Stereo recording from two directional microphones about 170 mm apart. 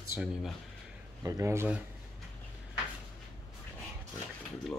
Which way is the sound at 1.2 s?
20° right (ahead or behind).